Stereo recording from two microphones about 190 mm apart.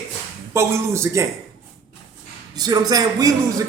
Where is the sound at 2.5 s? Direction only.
20° right (ahead or behind).